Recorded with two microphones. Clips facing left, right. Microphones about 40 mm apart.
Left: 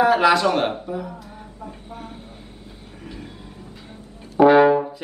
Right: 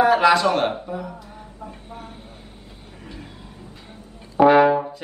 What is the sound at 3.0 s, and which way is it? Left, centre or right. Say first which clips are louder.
Music: left 2 dB; centre.